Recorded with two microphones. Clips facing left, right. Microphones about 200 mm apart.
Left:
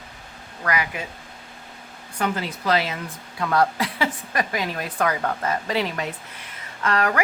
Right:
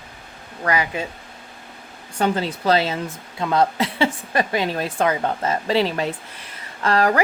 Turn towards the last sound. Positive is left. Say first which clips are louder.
# right 4 dB
turn(degrees=-30)  # may be behind; listen again after turning